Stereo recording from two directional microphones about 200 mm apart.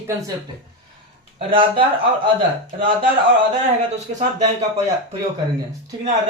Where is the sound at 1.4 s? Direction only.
25° right (ahead or behind).